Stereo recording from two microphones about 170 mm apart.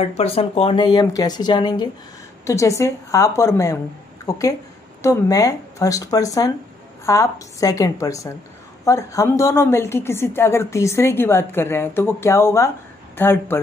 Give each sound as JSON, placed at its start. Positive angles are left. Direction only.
{"t": 0.0, "sound": "a woman's voice", "side_deg": 35}